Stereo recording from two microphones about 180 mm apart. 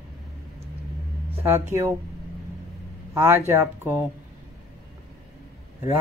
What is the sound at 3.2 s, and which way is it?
Speech, 15° right (ahead or behind).